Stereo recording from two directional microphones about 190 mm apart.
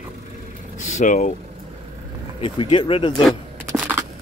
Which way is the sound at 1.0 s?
40° left (ahead or behind).